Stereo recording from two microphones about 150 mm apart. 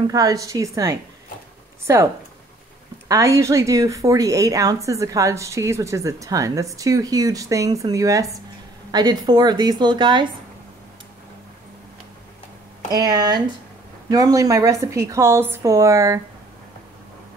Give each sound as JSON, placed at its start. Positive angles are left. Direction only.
{"t": 0.0, "sound": "a woman's voice", "side_deg": -25}
{"t": 3.1, "sound": "a woman's voice", "side_deg": -20}
{"t": 12.9, "sound": "a woman's voice", "side_deg": -25}